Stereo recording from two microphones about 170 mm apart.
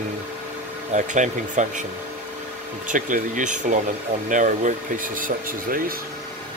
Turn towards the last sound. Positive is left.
turn(degrees=-55)  # may be behind; listen again after turning